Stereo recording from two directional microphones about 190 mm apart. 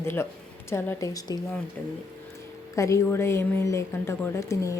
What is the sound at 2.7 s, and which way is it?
Speech, 15° left (ahead or behind).